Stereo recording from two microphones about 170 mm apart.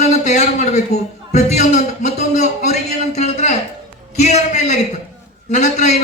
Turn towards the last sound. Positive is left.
turn(degrees=45)  # may be behind; listen again after turning